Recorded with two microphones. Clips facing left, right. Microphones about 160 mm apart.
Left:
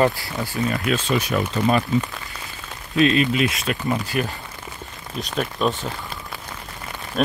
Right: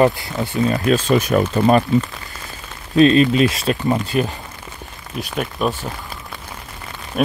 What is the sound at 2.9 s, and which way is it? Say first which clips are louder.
Speech: right 6 dB; 35° right (ahead or behind).